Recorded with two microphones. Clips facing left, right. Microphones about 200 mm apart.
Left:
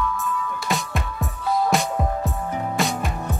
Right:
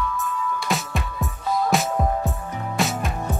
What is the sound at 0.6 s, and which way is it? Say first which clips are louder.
Music: even; centre (ahead or behind).